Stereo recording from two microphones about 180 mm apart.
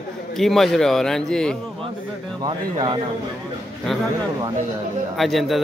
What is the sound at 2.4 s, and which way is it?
Speech, 25° right (ahead or behind).